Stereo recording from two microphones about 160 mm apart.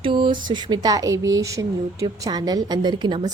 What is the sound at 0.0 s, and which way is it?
Speech, 30° right (ahead or behind).